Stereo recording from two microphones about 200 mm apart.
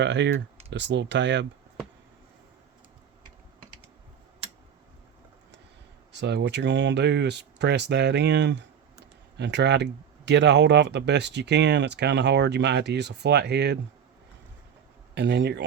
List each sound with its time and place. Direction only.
0.0 s speech: 60° right (ahead or behind)
6.1 s speech: 60° right (ahead or behind)
15.1 s speech: 60° right (ahead or behind)